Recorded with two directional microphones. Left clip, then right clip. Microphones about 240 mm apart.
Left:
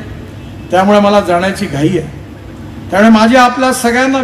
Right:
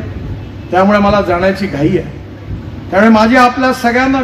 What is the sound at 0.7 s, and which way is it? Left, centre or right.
A man's voice, left.